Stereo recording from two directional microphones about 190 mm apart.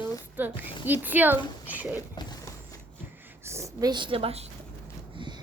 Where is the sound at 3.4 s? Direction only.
15° right (ahead or behind); by 4.4 s 30° right (ahead or behind).